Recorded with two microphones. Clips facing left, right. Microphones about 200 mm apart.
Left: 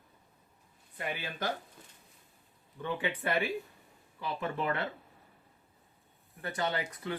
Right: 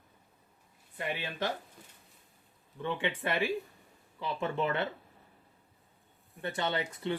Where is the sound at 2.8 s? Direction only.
25° right (ahead or behind).